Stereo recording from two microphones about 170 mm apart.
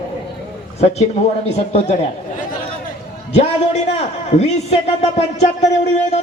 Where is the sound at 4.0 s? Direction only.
40° left (ahead or behind).